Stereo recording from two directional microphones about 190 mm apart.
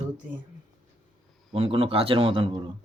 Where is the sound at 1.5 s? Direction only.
30° right (ahead or behind).